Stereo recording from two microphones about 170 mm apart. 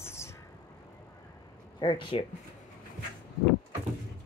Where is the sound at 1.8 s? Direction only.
30° left (ahead or behind).